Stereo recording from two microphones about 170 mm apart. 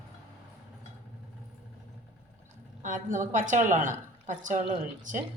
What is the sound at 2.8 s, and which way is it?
A woman's voice, 50° right (ahead or behind).